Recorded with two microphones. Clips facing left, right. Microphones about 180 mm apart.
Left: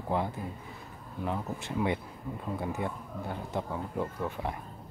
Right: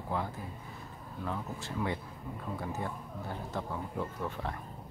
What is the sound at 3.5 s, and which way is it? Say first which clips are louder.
Speech: left 3 dB; 15° left (ahead or behind).